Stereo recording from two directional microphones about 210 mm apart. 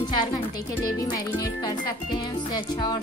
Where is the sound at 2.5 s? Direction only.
20° left (ahead or behind).